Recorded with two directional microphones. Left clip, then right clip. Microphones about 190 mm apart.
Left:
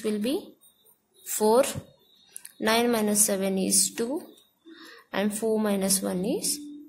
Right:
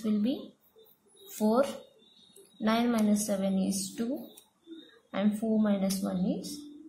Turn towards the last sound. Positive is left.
turn(degrees=50)  # may be behind; listen again after turning